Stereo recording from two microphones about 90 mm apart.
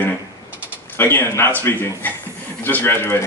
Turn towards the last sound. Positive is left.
turn(degrees=25)  # may be behind; listen again after turning